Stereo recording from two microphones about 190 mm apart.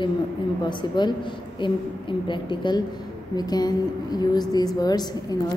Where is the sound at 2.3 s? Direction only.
25° left (ahead or behind).